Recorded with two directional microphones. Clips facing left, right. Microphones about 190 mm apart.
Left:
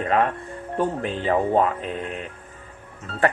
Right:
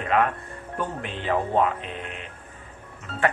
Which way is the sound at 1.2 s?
40° left (ahead or behind).